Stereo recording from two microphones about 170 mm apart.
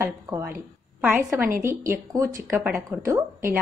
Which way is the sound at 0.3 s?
15° right (ahead or behind).